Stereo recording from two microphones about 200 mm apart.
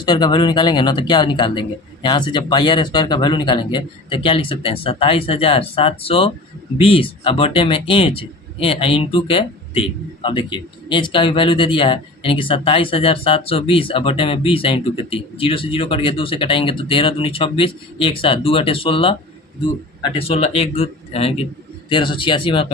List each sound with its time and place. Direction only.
0.0 s speech: 25° left (ahead or behind)